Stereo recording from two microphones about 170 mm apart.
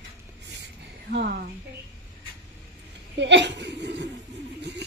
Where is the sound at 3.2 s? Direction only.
90° right.